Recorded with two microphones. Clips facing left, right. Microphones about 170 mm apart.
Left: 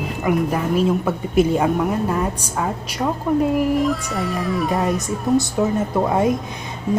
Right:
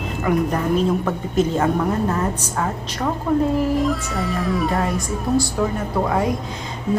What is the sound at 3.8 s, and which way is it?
Speech, centre (ahead or behind).